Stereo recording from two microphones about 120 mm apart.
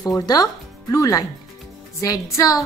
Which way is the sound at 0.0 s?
30° left (ahead or behind).